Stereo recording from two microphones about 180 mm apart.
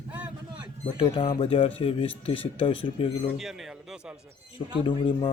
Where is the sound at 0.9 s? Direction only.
30° left (ahead or behind).